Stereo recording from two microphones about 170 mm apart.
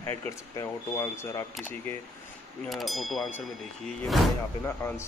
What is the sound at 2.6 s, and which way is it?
Speech, centre (ahead or behind).